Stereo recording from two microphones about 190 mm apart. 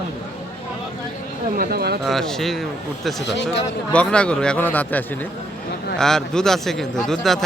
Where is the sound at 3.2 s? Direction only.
70° left (ahead or behind).